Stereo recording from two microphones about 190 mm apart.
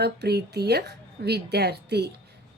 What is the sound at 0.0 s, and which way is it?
A woman's voice, 60° right (ahead or behind).